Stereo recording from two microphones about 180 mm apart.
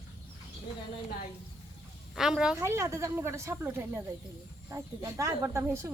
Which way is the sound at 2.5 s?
15° right (ahead or behind).